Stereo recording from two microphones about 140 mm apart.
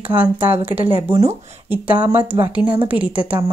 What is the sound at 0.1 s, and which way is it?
Speech, 15° right (ahead or behind).